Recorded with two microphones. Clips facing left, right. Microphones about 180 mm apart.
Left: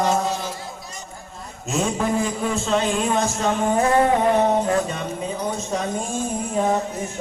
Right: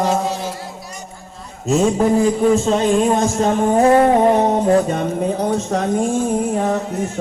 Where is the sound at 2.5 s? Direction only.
40° right (ahead or behind).